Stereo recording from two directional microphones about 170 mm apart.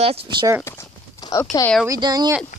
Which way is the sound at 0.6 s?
20° left (ahead or behind).